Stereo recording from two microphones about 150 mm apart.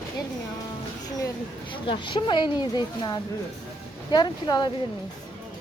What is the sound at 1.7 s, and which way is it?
A woman's voice, 35° left (ahead or behind).